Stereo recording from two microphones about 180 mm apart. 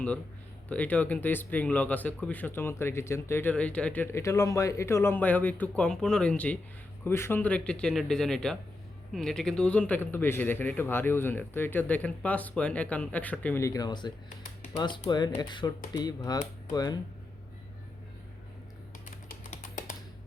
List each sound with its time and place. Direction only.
0.7 s speech: 10° left (ahead or behind)